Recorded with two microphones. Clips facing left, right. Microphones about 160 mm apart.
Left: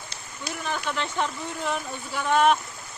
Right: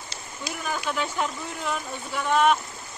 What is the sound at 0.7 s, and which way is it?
Speech, 10° right (ahead or behind).